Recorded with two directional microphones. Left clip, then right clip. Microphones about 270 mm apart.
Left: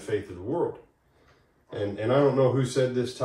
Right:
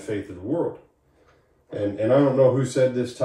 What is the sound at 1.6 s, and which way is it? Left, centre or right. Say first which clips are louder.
Speech: right 5 dB; centre.